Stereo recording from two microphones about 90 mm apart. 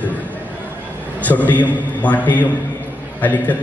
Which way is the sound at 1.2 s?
15° left (ahead or behind).